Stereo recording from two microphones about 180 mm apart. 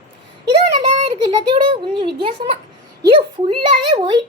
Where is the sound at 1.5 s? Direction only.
30° right (ahead or behind).